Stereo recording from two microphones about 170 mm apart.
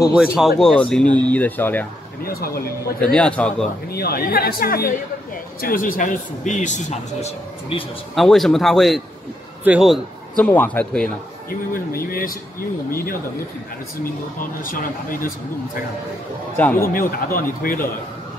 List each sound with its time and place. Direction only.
0.1 s speech: 5° right (ahead or behind)
2.2 s speech: 60° left (ahead or behind)
3.0 s speech: 5° left (ahead or behind)
3.9 s speech: 65° left (ahead or behind); by 7.8 s 40° left (ahead or behind)
8.1 s a man's voice: centre (ahead or behind)
11.7 s speech: 60° left (ahead or behind)
16.5 s speech: 10° left (ahead or behind)
16.9 s speech: 55° left (ahead or behind)